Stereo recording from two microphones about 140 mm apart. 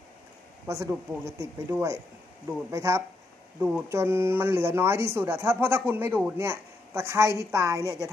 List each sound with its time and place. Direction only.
0.7 s speech: 20° right (ahead or behind)